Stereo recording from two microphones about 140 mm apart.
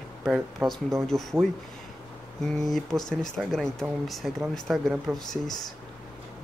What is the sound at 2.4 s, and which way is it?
Speech, 5° left (ahead or behind).